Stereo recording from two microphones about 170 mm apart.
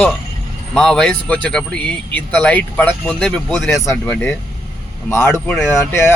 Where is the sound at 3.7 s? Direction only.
20° left (ahead or behind).